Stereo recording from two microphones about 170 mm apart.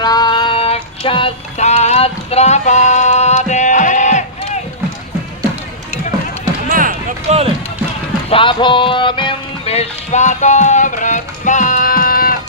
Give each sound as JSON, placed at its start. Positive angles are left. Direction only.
{"t": 0.0, "sound": "music", "side_deg": 25}
{"t": 6.7, "sound": "basketball bounce", "side_deg": -50}
{"t": 8.3, "sound": "music", "side_deg": 30}